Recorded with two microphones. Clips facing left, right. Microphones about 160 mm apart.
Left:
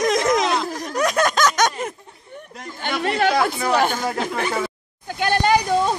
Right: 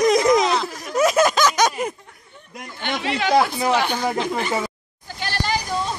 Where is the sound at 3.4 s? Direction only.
25° right (ahead or behind).